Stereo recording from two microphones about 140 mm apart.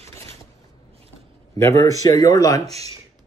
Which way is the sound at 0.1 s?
15° left (ahead or behind).